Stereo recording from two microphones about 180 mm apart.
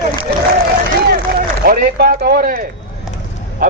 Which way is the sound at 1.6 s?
55° right (ahead or behind).